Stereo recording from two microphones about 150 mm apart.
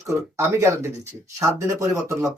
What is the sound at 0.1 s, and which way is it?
Speech, 15° right (ahead or behind).